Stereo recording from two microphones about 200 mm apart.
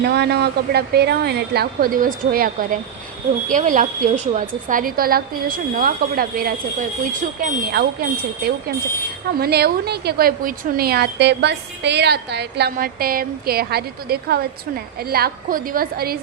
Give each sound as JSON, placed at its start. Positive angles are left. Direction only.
{"t": 0.0, "sound": "a woman's voice", "side_deg": -55}
{"t": 9.4, "sound": "a woman's voice", "side_deg": -50}